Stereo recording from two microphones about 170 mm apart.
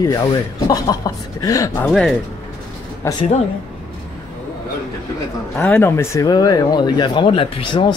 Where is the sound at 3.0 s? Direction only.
20° left (ahead or behind).